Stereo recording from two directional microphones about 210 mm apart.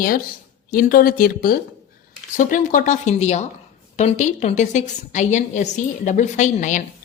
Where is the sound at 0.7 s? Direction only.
40° left (ahead or behind).